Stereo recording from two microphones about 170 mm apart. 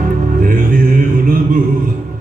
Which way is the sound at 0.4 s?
55° right (ahead or behind).